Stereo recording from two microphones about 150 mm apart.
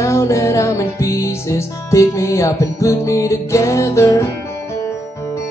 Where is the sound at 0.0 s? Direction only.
20° left (ahead or behind).